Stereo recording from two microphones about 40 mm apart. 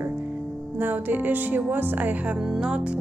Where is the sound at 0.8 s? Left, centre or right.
Right.